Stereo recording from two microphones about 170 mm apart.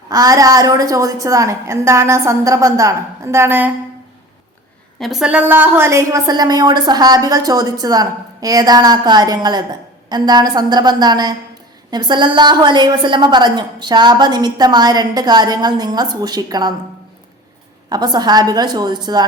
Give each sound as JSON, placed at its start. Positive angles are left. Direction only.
{"t": 0.1, "sound": "a woman's voice", "side_deg": -20}
{"t": 4.9, "sound": "a woman's voice", "side_deg": 0}
{"t": 17.8, "sound": "a woman's voice", "side_deg": -25}